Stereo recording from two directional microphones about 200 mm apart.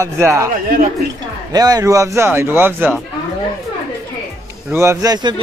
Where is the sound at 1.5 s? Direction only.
20° right (ahead or behind).